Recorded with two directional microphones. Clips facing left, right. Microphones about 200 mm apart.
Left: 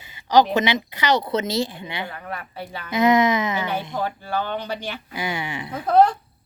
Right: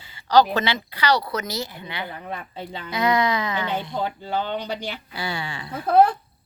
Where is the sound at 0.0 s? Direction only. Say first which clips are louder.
Even; 20° left (ahead or behind).